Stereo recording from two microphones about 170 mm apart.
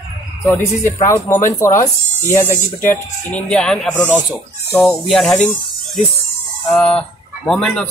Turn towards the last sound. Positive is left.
turn(degrees=5)  # may be behind; listen again after turning